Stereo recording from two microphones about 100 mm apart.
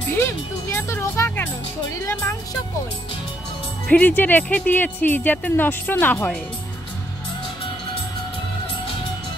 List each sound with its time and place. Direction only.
0.1 s music: 25° left (ahead or behind)
3.9 s speech: 15° left (ahead or behind)